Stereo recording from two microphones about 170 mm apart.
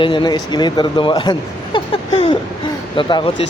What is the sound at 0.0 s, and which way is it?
Speech, 30° left (ahead or behind).